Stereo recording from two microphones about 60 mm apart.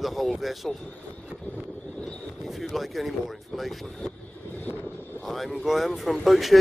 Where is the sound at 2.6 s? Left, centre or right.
Centre.